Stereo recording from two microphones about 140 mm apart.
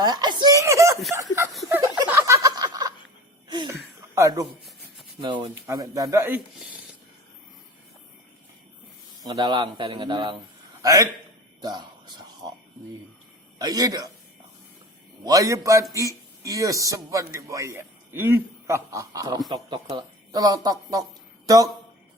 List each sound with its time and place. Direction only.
0.0 s speech: 30° right (ahead or behind)
2.0 s a sound: 20° right (ahead or behind)
4.1 s a man's voice: 25° right (ahead or behind)
9.2 s a man's voice: 30° right (ahead or behind)
11.6 s a sound: 30° right (ahead or behind)
13.6 s a man's voice: 25° right (ahead or behind)
15.2 s a man's voice: 25° right (ahead or behind)